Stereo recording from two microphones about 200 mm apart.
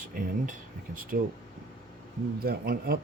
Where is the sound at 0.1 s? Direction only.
45° right (ahead or behind).